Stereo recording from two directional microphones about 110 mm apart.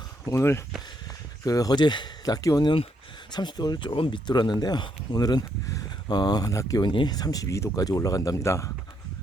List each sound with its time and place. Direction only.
0.3 s speech: 25° left (ahead or behind)
6.8 s speech: 45° left (ahead or behind); by 8.7 s 30° left (ahead or behind)